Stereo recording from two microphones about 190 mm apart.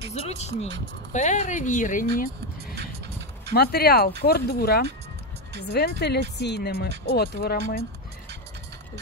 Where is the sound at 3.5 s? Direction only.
55° left (ahead or behind).